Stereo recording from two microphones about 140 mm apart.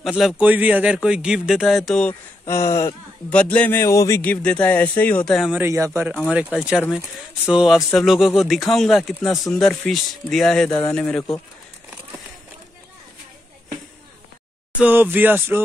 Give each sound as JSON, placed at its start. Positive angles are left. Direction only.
{"t": 0.0, "sound": "speech", "side_deg": -5}
{"t": 2.4, "sound": "a sound", "side_deg": 20}
{"t": 3.3, "sound": "speech", "side_deg": 10}
{"t": 4.2, "sound": "speech", "side_deg": 10}
{"t": 5.5, "sound": "speech", "side_deg": -20}
{"t": 6.5, "sound": "speech", "side_deg": -10}
{"t": 14.8, "sound": "speech", "side_deg": -15}